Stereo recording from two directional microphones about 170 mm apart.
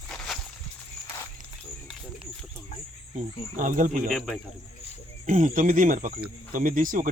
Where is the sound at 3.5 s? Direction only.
50° right (ahead or behind).